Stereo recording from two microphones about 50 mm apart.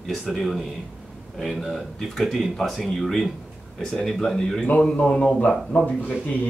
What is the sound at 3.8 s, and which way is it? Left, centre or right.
Speech, centre.